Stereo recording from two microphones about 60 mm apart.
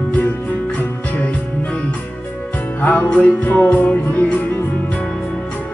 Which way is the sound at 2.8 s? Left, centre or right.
Left.